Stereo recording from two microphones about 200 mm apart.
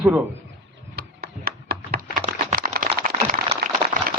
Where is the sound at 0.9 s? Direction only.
50° right (ahead or behind).